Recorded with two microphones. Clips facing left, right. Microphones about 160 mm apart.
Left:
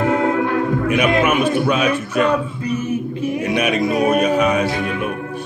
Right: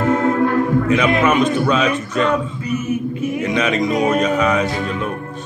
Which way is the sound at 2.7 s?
30° left (ahead or behind).